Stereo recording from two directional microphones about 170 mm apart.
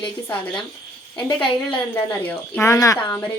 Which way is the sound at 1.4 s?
30° left (ahead or behind).